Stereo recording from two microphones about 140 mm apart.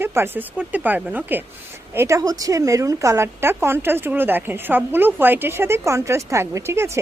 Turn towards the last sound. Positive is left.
turn(degrees=-20)  # may be behind; listen again after turning